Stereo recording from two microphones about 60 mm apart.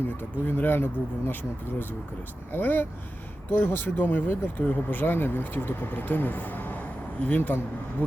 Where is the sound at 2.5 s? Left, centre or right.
Left.